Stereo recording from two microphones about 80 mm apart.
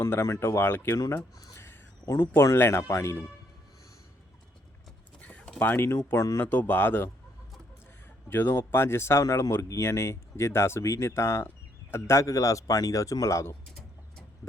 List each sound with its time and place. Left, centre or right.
0.0 s speech: left
0.9 s speech: left
5.5 s speech: left
6.5 s speech: left
8.3 s speech: left